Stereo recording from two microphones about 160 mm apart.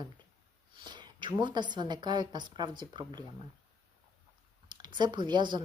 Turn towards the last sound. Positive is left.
turn(degrees=-30)  # may be behind; listen again after turning